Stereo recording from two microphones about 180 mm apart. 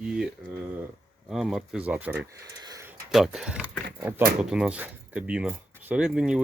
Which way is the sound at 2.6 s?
20° right (ahead or behind).